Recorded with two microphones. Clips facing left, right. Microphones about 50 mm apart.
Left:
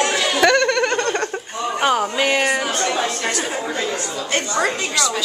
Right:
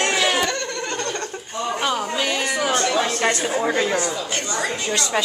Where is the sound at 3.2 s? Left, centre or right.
Right.